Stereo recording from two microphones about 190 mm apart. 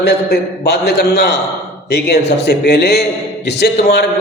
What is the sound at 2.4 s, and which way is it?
A man's voice, 60° left (ahead or behind).